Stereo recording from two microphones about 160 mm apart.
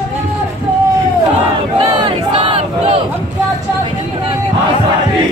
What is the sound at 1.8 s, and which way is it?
Battle cry, 30° right (ahead or behind).